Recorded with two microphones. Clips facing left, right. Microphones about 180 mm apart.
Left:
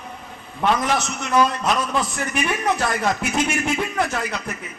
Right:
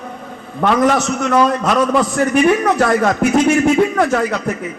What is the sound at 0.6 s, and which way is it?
Speech, 50° right (ahead or behind).